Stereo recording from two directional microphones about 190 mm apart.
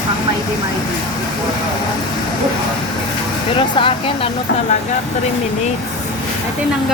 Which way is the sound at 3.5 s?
25° left (ahead or behind).